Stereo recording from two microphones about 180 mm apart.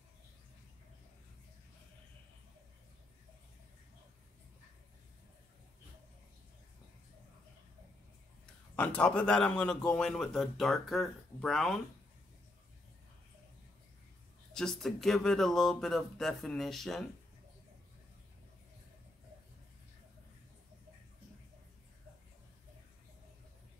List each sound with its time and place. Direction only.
8.7 s a man's voice: 10° left (ahead or behind)
14.5 s a man's voice: 5° left (ahead or behind)